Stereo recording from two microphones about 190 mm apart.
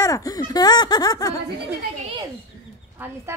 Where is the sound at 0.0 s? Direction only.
20° left (ahead or behind).